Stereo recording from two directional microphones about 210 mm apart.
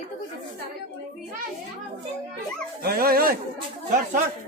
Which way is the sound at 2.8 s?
45° right (ahead or behind).